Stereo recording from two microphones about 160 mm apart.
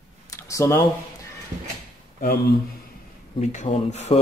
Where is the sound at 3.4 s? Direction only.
50° left (ahead or behind).